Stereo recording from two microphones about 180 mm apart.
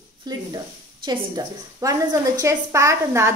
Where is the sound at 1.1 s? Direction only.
25° right (ahead or behind).